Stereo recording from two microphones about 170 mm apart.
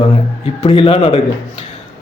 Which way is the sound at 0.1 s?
35° left (ahead or behind).